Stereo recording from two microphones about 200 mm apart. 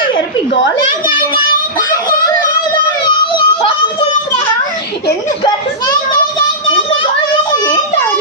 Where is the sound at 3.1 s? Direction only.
25° left (ahead or behind).